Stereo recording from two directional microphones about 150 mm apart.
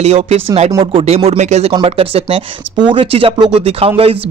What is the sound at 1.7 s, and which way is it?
Speech, 40° right (ahead or behind).